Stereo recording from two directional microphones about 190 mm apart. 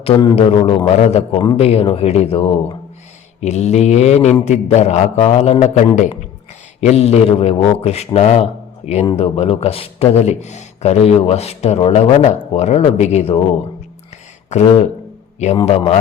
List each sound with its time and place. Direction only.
0.0 s a man's voice: 25° left (ahead or behind)